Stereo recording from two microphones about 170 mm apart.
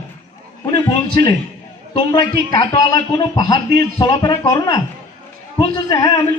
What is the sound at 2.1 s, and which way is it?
A man's voice, 20° left (ahead or behind).